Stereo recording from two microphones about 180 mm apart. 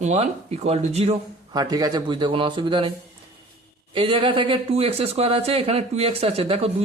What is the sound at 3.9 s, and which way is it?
Speech, 30° right (ahead or behind).